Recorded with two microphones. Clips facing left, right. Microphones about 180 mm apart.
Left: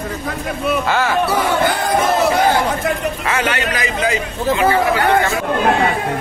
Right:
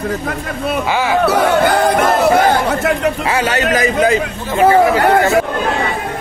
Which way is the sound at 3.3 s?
35° right (ahead or behind).